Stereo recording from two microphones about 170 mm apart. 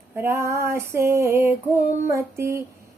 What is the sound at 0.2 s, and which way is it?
Speech, 15° right (ahead or behind).